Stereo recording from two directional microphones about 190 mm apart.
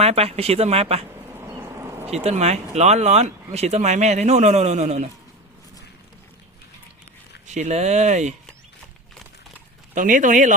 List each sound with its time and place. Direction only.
0.0 s speech: 35° right (ahead or behind)
2.0 s speech: 35° right (ahead or behind)
7.4 s speech: 40° right (ahead or behind)
9.9 s speech: 45° right (ahead or behind)